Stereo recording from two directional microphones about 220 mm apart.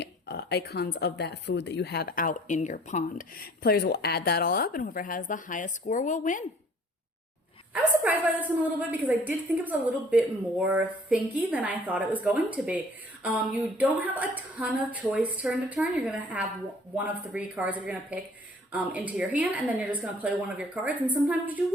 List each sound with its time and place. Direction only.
0.0 s speech: 50° left (ahead or behind)
8.9 s speech: 10° right (ahead or behind)